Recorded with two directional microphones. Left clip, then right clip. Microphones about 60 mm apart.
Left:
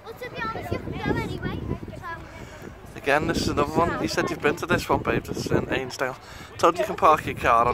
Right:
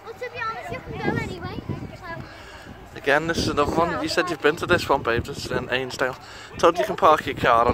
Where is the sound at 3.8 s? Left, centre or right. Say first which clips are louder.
Right 2 dB; right.